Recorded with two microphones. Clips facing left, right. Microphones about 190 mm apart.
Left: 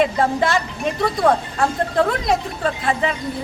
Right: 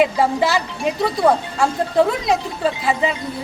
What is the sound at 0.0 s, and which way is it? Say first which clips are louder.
A woman's voice: right 1 dB; 5° right (ahead or behind).